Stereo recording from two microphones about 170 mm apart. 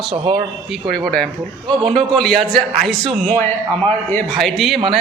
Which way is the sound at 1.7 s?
5° left (ahead or behind).